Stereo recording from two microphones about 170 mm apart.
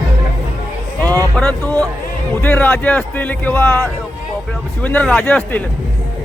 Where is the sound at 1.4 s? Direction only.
5° left (ahead or behind).